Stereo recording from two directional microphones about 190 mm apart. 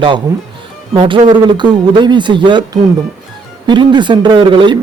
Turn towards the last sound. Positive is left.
turn(degrees=-25)  # may be behind; listen again after turning